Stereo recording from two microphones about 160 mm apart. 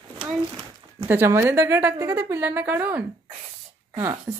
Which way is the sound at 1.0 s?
15° right (ahead or behind).